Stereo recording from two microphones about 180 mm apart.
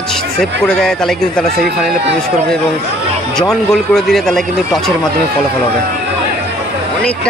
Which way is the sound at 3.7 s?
Centre (ahead or behind).